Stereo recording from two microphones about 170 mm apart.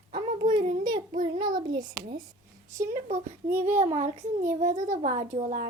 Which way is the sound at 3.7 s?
45° right (ahead or behind).